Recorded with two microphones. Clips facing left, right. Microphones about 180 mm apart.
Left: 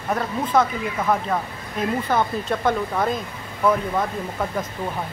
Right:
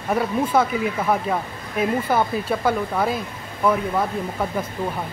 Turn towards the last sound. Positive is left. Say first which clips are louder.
# right 1 dB
turn(degrees=-5)  # may be behind; listen again after turning